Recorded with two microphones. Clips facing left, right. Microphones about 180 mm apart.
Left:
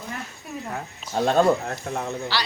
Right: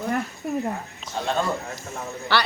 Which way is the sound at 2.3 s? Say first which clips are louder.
Right 8 dB; 60° right (ahead or behind).